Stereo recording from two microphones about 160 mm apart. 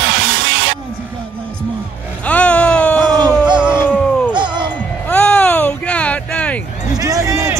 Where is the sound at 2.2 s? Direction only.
10° left (ahead or behind).